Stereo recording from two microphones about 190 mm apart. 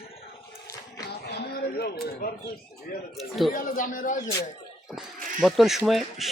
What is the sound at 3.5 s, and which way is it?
Speech, 45° left (ahead or behind).